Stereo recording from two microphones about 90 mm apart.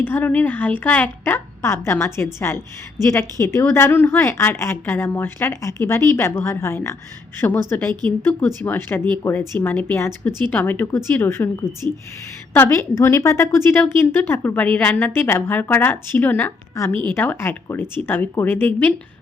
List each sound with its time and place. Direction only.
0.0 s a woman's voice: 20° left (ahead or behind)
16.7 s a woman's voice: 30° left (ahead or behind)